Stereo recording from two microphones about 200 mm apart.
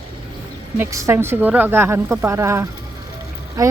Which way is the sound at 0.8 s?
15° right (ahead or behind).